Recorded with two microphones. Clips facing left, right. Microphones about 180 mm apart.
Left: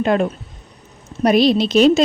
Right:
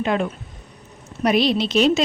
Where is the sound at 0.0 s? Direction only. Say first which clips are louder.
Left 5 dB; 45° left (ahead or behind).